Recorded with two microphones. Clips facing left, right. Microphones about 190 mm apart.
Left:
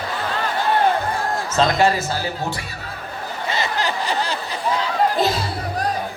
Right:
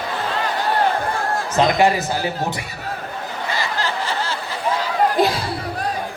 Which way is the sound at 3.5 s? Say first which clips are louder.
Left 1 dB; 20° left (ahead or behind).